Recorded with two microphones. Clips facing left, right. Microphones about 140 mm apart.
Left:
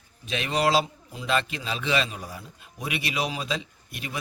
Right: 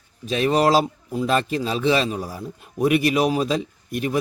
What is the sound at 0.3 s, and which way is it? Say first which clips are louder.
A man's voice: right 6 dB; 40° right (ahead or behind).